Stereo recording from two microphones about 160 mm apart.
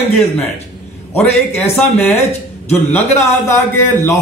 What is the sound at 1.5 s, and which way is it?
A man's voice, 10° left (ahead or behind).